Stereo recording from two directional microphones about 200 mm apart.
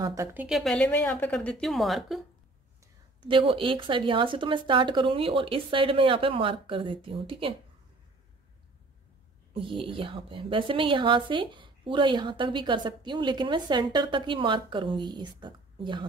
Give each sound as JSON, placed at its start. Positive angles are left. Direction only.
{"t": 0.0, "sound": "a woman's voice", "side_deg": -15}
{"t": 3.2, "sound": "a woman's voice", "side_deg": -25}
{"t": 9.5, "sound": "a woman's voice", "side_deg": -25}